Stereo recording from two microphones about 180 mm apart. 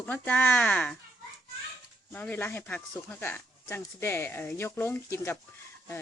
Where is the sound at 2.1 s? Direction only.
10° left (ahead or behind).